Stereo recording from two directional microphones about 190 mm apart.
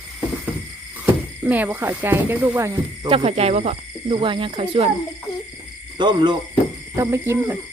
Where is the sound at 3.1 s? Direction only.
35° right (ahead or behind).